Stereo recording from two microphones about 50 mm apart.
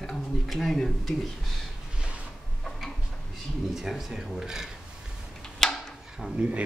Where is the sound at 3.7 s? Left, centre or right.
Centre.